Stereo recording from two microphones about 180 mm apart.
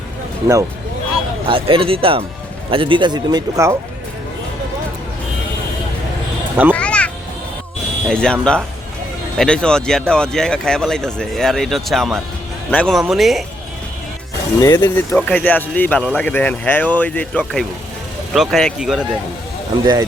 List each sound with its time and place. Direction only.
1.5 s speech: 30° right (ahead or behind)
6.7 s music: 5° left (ahead or behind)
8.0 s speech: 5° left (ahead or behind)
14.6 s speech: 15° left (ahead or behind); by 19.0 s 5° right (ahead or behind)
19.8 s speech: 25° right (ahead or behind)